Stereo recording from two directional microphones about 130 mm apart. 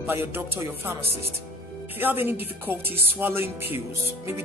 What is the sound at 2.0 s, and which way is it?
Speech, 15° right (ahead or behind).